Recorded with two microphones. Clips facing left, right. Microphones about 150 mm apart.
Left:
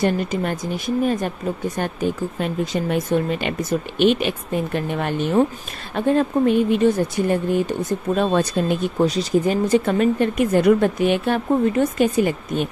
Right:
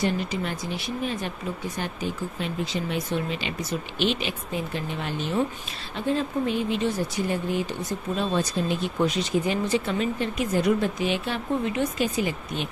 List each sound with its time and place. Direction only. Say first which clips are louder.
0.0 s speech: left 6 dB; 50° left (ahead or behind)
8.9 s speech: left 5 dB; 35° left (ahead or behind); by 12.6 s 50° left (ahead or behind)